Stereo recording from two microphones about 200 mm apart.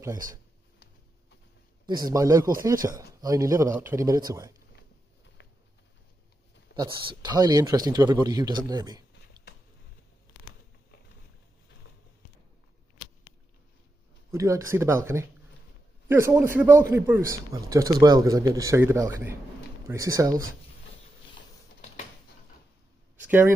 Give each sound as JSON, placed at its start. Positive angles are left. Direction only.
{"t": 1.9, "sound": "speech", "side_deg": -20}
{"t": 6.7, "sound": "speech", "side_deg": -25}
{"t": 14.3, "sound": "speech", "side_deg": -15}
{"t": 23.1, "sound": "speech", "side_deg": -10}